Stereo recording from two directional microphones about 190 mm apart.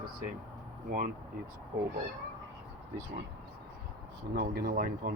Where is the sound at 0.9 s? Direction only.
45° right (ahead or behind).